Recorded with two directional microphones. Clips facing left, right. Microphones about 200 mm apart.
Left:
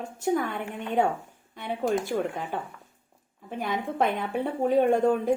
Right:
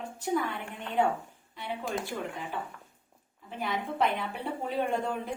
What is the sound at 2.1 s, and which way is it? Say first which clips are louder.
A woman's voice: left 7 dB; 55° left (ahead or behind).